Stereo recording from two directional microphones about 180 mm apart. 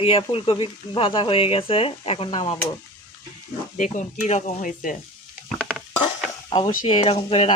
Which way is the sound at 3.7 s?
45° left (ahead or behind).